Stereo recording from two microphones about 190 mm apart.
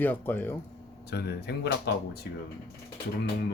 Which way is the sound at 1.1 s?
60° left (ahead or behind).